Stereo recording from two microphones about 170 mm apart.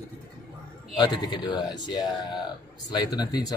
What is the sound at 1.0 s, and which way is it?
Speech, 25° left (ahead or behind).